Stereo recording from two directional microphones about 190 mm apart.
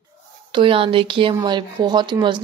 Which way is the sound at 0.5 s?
30° right (ahead or behind).